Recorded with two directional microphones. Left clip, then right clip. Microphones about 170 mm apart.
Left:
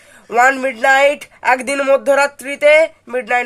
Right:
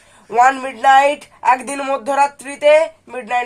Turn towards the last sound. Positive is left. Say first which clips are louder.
# left 3 dB
turn(degrees=45)  # may be behind; listen again after turning